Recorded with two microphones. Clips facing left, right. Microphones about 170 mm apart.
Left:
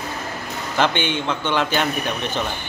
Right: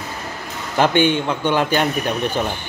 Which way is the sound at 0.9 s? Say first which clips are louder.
Right 7 dB; 45° right (ahead or behind).